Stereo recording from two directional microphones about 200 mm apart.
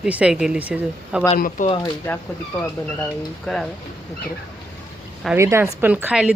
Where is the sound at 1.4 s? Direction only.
45° left (ahead or behind).